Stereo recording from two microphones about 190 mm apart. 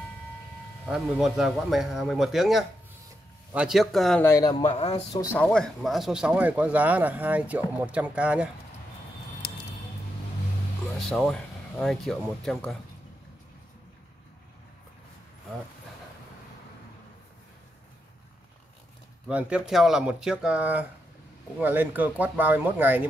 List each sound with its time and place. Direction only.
0.8 s a man's voice: centre (ahead or behind)
4.2 s speech: 15° left (ahead or behind)
4.7 s speech: 30° left (ahead or behind)
5.3 s speech: 5° left (ahead or behind)
11.0 s speech: centre (ahead or behind)
19.2 s a man's voice: 5° right (ahead or behind)